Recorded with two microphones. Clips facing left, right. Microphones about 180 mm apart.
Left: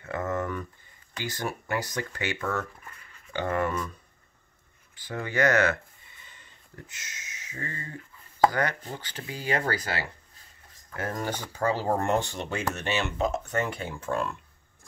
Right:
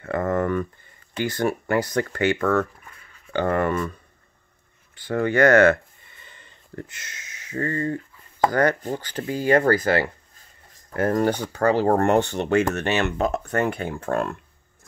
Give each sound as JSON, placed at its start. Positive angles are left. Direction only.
{"t": 0.0, "sound": "a sound", "side_deg": -60}
{"t": 1.2, "sound": "speech", "side_deg": -55}
{"t": 4.9, "sound": "speech", "side_deg": -60}
{"t": 8.5, "sound": "speech", "side_deg": -45}